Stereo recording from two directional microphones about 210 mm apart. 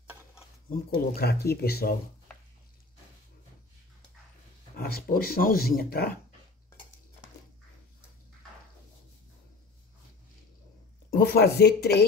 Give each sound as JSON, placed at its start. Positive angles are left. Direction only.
{"t": 0.7, "sound": "speech", "side_deg": 45}
{"t": 4.7, "sound": "speech", "side_deg": 45}
{"t": 11.1, "sound": "speech", "side_deg": 45}